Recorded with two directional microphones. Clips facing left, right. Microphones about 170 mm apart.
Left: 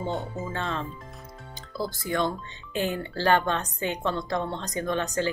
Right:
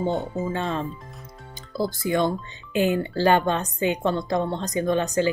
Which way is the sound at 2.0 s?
15° right (ahead or behind).